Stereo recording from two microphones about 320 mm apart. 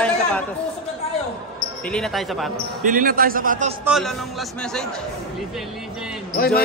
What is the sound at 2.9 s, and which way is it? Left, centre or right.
Speech, right.